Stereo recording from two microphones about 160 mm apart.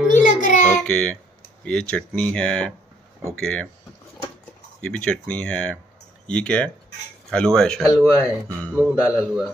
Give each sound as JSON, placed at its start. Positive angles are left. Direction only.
{"t": 0.1, "sound": "a sound", "side_deg": 55}
{"t": 0.8, "sound": "speech", "side_deg": 5}
{"t": 4.8, "sound": "speech", "side_deg": 5}
{"t": 9.0, "sound": "a man's voice", "side_deg": -10}